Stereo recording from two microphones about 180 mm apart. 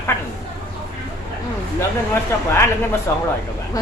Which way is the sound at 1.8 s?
15° left (ahead or behind).